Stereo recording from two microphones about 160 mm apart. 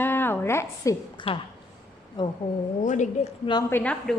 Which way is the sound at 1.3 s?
40° left (ahead or behind).